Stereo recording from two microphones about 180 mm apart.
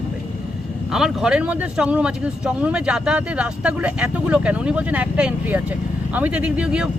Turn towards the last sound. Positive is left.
turn(degrees=-5)  # may be behind; listen again after turning